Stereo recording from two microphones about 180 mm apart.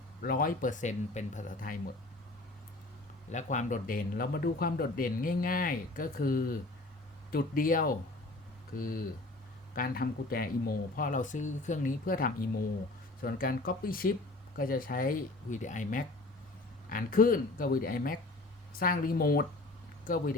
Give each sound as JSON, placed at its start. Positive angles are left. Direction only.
{"t": 0.2, "sound": "speech", "side_deg": 55}
{"t": 3.3, "sound": "speech", "side_deg": 40}